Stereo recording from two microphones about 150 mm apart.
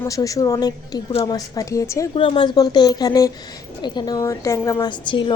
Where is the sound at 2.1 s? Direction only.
35° left (ahead or behind).